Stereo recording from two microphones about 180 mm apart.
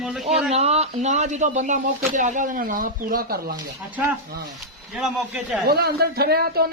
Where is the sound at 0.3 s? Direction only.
35° right (ahead or behind); by 3.5 s 55° right (ahead or behind).